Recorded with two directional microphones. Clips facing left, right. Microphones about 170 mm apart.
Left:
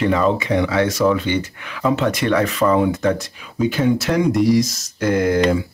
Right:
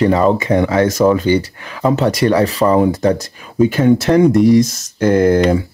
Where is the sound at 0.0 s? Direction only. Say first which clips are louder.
Right 5 dB; 40° right (ahead or behind).